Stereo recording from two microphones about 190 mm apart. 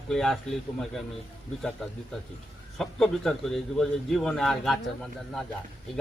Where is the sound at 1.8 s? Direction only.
Centre (ahead or behind).